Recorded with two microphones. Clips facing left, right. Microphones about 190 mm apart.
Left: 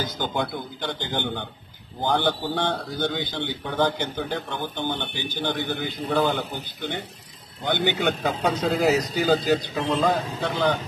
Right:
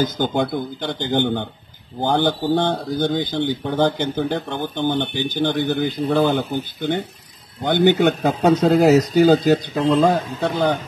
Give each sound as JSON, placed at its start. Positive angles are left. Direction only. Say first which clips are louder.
{"t": 0.0, "sound": "speech", "louder": "right 7 dB", "side_deg": -45}